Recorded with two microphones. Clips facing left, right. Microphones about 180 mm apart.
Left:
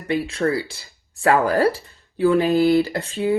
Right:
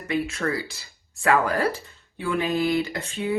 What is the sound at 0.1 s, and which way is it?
Speech, 30° left (ahead or behind).